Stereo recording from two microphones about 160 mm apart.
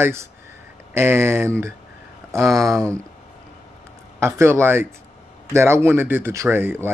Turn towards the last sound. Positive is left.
turn(degrees=-15)  # may be behind; listen again after turning